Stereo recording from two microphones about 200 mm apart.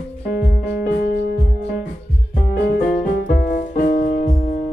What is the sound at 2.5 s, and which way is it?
Music, 55° left (ahead or behind).